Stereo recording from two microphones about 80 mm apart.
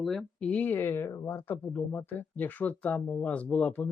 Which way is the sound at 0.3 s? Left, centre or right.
Centre.